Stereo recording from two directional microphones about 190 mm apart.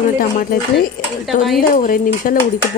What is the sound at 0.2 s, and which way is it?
Speech, 50° left (ahead or behind).